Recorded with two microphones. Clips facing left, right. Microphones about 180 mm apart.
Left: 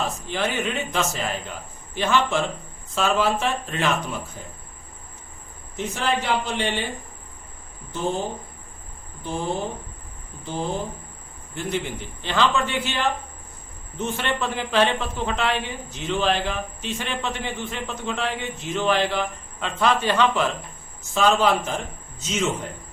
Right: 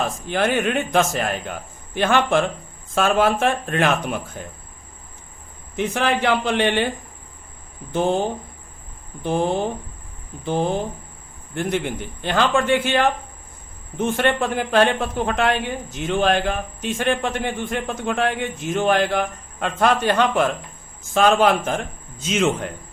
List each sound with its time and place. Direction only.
0.0 s a man's voice: 50° right (ahead or behind)
5.7 s a man's voice: 60° right (ahead or behind)
7.9 s a man's voice: 60° right (ahead or behind)
9.2 s a man's voice: 60° right (ahead or behind)